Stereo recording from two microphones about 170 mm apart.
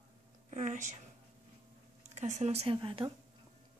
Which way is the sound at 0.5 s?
45° right (ahead or behind).